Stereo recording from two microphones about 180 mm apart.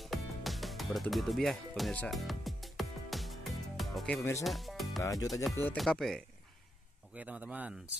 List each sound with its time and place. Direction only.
0.0 s music: centre (ahead or behind)
4.2 s speech: 15° left (ahead or behind)
4.5 s music: centre (ahead or behind)
5.0 s speech: 20° left (ahead or behind)
5.8 s speech: centre (ahead or behind)